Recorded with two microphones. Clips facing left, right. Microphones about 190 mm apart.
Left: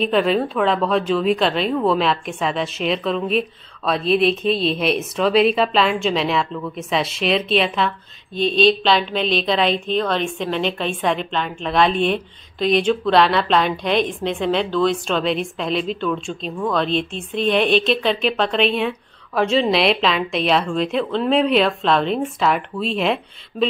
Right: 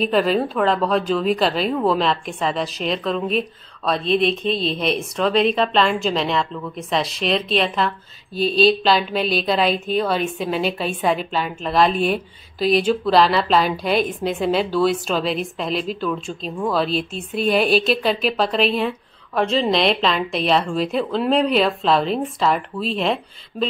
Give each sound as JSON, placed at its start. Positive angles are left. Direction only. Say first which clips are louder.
{"t": 0.0, "sound": "a woman's voice", "louder": "even", "side_deg": 0}